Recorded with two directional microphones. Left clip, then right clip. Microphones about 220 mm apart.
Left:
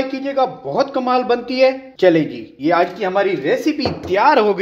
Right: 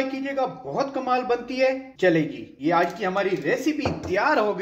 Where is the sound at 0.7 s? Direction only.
40° left (ahead or behind).